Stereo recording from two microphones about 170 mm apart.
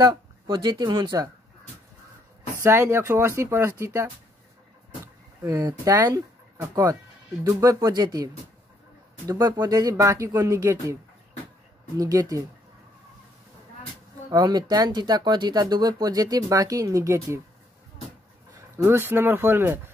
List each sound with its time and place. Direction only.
0.0 s speech: 25° right (ahead or behind)
2.6 s speech: 15° right (ahead or behind)
9.3 s speech: 20° right (ahead or behind)
12.0 s speech: 20° right (ahead or behind)
14.3 s speech: 25° right (ahead or behind)
18.8 s speech: 15° right (ahead or behind)